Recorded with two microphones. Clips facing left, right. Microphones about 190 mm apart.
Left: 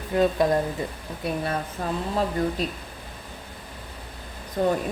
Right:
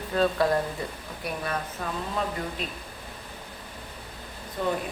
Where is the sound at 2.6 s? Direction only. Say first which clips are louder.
Left 6 dB; 35° left (ahead or behind).